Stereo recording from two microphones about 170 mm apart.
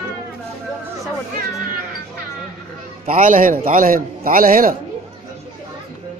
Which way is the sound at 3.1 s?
50° right (ahead or behind).